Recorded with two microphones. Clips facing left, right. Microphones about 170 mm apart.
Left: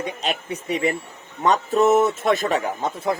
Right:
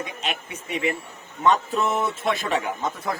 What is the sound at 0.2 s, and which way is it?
A man's voice, 35° left (ahead or behind).